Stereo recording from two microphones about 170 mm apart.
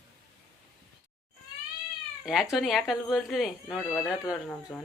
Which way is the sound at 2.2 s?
Centre (ahead or behind).